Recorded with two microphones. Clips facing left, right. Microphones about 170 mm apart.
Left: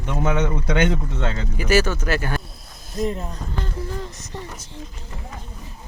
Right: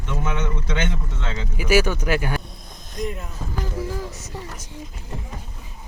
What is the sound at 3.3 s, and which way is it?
Music, 5° right (ahead or behind).